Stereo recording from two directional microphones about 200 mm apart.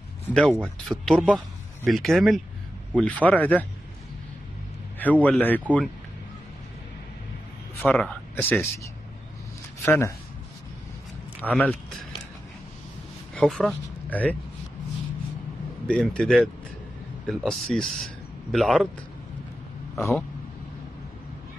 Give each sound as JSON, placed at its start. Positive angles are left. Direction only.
{"t": 0.3, "sound": "speech", "side_deg": 5}
{"t": 4.9, "sound": "speech", "side_deg": 10}
{"t": 7.8, "sound": "speech", "side_deg": 5}
{"t": 9.8, "sound": "speech", "side_deg": 15}
{"t": 11.4, "sound": "speech", "side_deg": 5}
{"t": 13.3, "sound": "speech", "side_deg": 5}
{"t": 15.9, "sound": "a man's voice", "side_deg": 5}
{"t": 20.0, "sound": "speech", "side_deg": 15}